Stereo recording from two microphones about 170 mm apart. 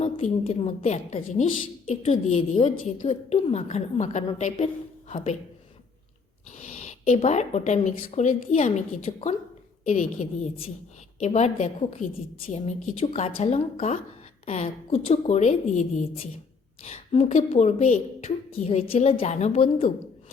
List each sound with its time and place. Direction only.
0.0 s a woman's voice: 40° left (ahead or behind)
6.6 s a woman's voice: 40° left (ahead or behind)